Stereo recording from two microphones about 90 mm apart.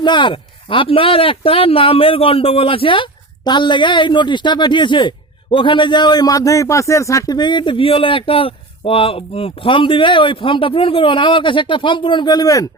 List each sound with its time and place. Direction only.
0.0 s speech: 60° left (ahead or behind); by 7.3 s 35° left (ahead or behind)
7.3 s speech: 55° left (ahead or behind)